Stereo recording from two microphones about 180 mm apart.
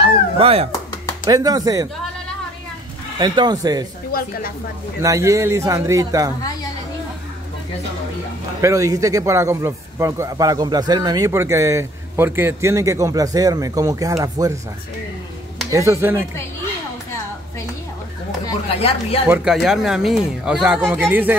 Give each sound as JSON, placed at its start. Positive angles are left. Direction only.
{"t": 0.4, "sound": "speech", "side_deg": -35}
{"t": 1.2, "sound": "speech", "side_deg": -20}
{"t": 3.2, "sound": "speech", "side_deg": -25}
{"t": 4.1, "sound": "speech", "side_deg": 55}
{"t": 5.0, "sound": "a man's voice", "side_deg": -15}
{"t": 8.5, "sound": "a man's voice", "side_deg": -15}
{"t": 15.7, "sound": "a man's voice", "side_deg": -15}
{"t": 18.7, "sound": "speech", "side_deg": 35}
{"t": 19.2, "sound": "speech", "side_deg": -5}